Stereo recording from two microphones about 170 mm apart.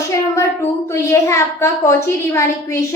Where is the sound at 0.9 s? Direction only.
15° left (ahead or behind).